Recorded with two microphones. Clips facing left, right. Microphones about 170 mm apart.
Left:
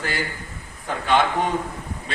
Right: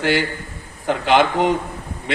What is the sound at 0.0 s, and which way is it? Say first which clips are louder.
A man's voice: right 8 dB; 90° right.